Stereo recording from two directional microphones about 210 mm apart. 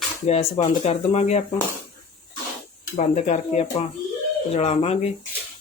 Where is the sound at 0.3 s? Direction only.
30° left (ahead or behind).